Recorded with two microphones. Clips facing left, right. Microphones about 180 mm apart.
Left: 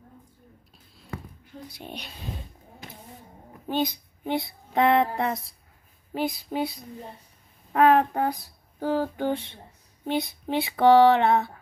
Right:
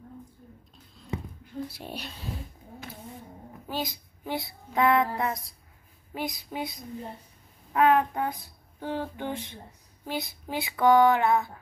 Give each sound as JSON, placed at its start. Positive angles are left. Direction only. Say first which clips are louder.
{"t": 1.7, "sound": "speech", "louder": "right 1 dB", "side_deg": -5}
{"t": 3.6, "sound": "a child's voice", "louder": "left 7 dB", "side_deg": 20}
{"t": 4.7, "sound": "female singing", "louder": "left 2 dB", "side_deg": 25}
{"t": 6.1, "sound": "speech", "louder": "left 6 dB", "side_deg": 30}
{"t": 10.0, "sound": "female singing", "louder": "left 6 dB", "side_deg": 25}